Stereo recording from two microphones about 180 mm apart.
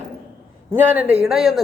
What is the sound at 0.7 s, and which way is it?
Speech, 10° right (ahead or behind).